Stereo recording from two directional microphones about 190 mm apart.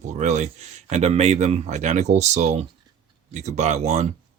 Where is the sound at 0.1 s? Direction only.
40° right (ahead or behind).